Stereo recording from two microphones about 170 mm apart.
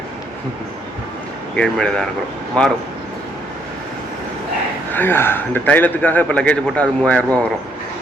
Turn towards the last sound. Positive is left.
turn(degrees=10)  # may be behind; listen again after turning